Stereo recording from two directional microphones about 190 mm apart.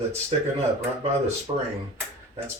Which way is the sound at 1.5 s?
30° right (ahead or behind).